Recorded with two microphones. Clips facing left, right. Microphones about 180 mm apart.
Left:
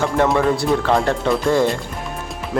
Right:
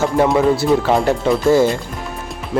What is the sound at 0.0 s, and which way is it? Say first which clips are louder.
Speech: right 3 dB; 5° right (ahead or behind).